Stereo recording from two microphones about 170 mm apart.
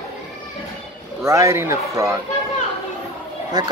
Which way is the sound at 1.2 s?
15° right (ahead or behind).